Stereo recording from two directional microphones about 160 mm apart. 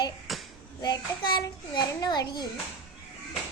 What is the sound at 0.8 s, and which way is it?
A child's voice, 25° left (ahead or behind).